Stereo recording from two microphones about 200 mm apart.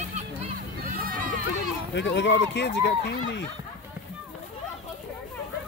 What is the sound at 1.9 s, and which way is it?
Speech, 65° left (ahead or behind).